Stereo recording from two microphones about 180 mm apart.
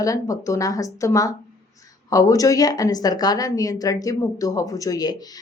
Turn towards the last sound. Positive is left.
turn(degrees=20)  # may be behind; listen again after turning